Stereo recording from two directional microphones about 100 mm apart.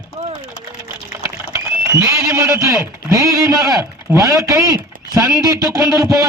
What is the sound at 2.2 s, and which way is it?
Speech, 30° right (ahead or behind).